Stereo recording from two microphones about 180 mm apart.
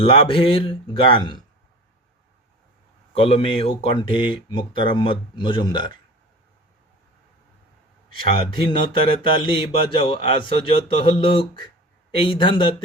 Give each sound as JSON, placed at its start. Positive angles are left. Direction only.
{"t": 0.0, "sound": "speech", "side_deg": 30}
{"t": 3.2, "sound": "speech", "side_deg": 35}
{"t": 8.8, "sound": "speech", "side_deg": 30}